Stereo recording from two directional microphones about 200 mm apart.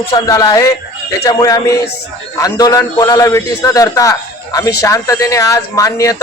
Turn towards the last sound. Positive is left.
turn(degrees=15)  # may be behind; listen again after turning